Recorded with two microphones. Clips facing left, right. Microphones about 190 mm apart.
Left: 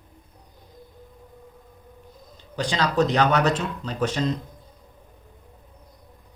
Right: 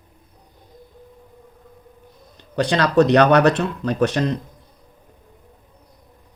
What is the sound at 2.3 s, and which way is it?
Speech, 65° right (ahead or behind).